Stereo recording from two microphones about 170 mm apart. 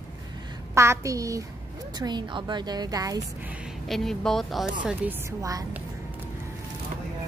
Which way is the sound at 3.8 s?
Centre (ahead or behind).